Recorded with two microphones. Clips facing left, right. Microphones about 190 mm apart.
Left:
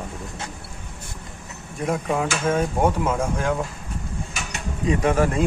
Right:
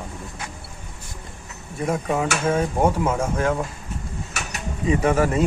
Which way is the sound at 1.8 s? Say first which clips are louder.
Right 1 dB; centre (ahead or behind).